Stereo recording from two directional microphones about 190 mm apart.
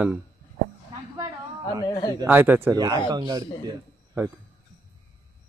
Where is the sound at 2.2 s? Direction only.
10° right (ahead or behind).